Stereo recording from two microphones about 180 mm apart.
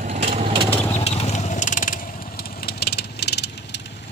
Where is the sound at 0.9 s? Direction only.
35° left (ahead or behind).